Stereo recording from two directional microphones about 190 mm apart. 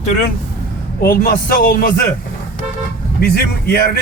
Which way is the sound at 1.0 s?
50° left (ahead or behind).